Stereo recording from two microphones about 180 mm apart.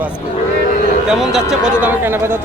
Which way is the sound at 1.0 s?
Centre (ahead or behind).